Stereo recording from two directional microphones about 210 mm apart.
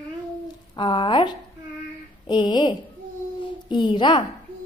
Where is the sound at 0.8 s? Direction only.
20° left (ahead or behind).